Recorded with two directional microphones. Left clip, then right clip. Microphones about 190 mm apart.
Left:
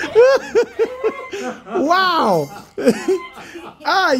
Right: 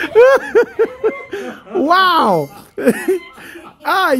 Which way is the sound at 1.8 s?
20° right (ahead or behind).